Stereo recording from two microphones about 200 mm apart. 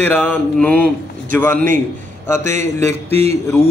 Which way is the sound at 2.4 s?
35° right (ahead or behind).